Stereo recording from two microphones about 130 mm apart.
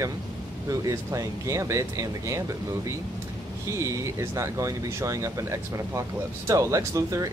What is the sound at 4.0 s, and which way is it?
Speech, 25° right (ahead or behind).